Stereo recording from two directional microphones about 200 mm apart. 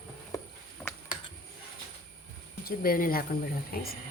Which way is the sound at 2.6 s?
45° left (ahead or behind).